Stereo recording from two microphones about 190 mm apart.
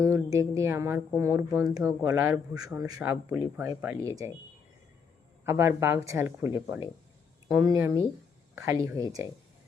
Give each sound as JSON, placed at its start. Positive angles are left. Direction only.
{"t": 0.0, "sound": "a woman's voice", "side_deg": -15}
{"t": 5.5, "sound": "speech", "side_deg": -15}